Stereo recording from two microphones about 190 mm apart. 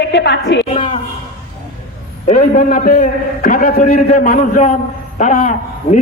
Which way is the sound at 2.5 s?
45° left (ahead or behind).